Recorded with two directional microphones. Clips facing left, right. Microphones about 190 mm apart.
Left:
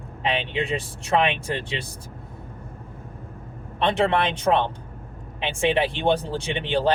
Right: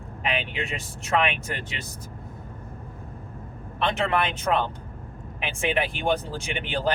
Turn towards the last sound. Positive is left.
turn(degrees=30)  # may be behind; listen again after turning